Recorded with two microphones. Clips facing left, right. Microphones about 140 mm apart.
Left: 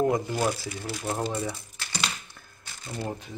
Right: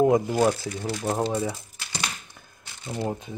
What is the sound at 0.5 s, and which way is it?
Speech, 5° left (ahead or behind).